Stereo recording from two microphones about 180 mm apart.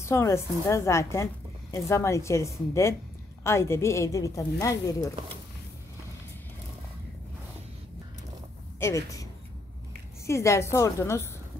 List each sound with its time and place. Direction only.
0.0 s a woman's voice: 15° left (ahead or behind)
8.7 s a woman's voice: 15° left (ahead or behind)